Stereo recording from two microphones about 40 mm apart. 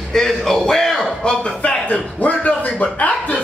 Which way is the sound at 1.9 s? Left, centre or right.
Left.